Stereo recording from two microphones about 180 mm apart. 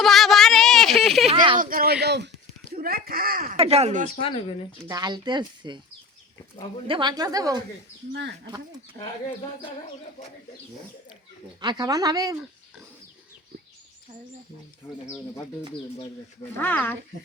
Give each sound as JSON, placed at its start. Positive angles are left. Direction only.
{"t": 0.0, "sound": "a sound", "side_deg": 0}
{"t": 1.5, "sound": "speech", "side_deg": -50}
{"t": 2.7, "sound": "speech", "side_deg": -55}
{"t": 3.4, "sound": "speech", "side_deg": -35}
{"t": 4.2, "sound": "speech", "side_deg": 30}
{"t": 4.8, "sound": "speech", "side_deg": -20}
{"t": 6.8, "sound": "speech", "side_deg": -25}
{"t": 8.1, "sound": "speech", "side_deg": -75}
{"t": 9.0, "sound": "speech", "side_deg": 20}
{"t": 11.6, "sound": "speech", "side_deg": -25}
{"t": 15.0, "sound": "speech", "side_deg": 15}
{"t": 16.6, "sound": "speech", "side_deg": 10}